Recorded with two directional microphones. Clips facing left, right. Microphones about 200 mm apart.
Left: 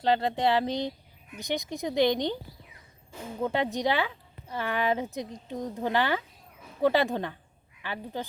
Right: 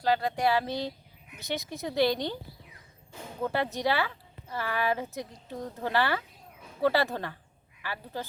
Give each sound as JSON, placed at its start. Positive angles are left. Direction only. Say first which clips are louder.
{"t": 0.0, "sound": "speech", "louder": "left 1 dB", "side_deg": 25}
{"t": 3.4, "sound": "a woman's voice", "louder": "left 1 dB", "side_deg": 15}